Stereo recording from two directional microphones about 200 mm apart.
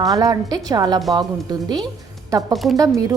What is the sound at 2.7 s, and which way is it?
Speech, 15° right (ahead or behind).